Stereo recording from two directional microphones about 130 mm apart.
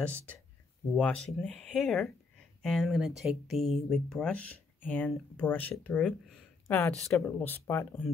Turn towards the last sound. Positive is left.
turn(degrees=15)  # may be behind; listen again after turning